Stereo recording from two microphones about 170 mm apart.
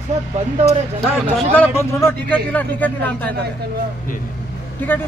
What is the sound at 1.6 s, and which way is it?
A man's voice, 15° left (ahead or behind).